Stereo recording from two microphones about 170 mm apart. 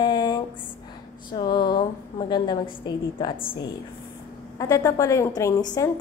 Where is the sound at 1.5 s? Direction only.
60° left (ahead or behind).